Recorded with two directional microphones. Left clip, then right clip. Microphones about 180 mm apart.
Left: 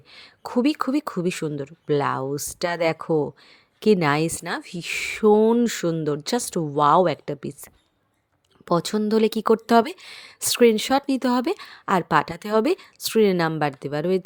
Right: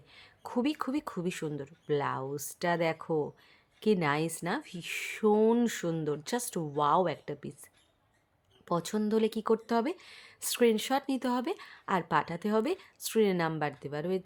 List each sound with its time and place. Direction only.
0.1 s speech: 35° left (ahead or behind)